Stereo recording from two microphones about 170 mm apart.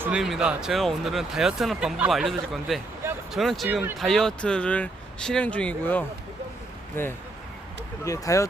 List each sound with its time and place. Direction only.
0.0 s speech: 5° right (ahead or behind); by 8.4 s 20° left (ahead or behind)